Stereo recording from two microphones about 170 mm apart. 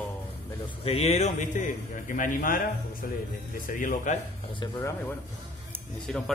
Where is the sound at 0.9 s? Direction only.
40° left (ahead or behind); by 2.6 s 55° left (ahead or behind).